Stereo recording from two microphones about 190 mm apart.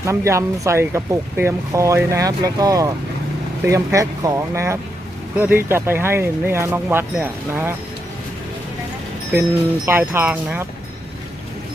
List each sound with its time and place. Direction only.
0.0 s speech: 15° right (ahead or behind)
9.8 s speech: 10° right (ahead or behind)